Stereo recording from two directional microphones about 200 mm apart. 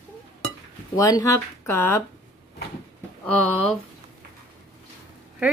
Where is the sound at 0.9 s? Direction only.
15° left (ahead or behind).